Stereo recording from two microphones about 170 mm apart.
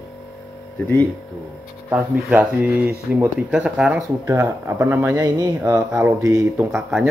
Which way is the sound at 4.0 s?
15° right (ahead or behind).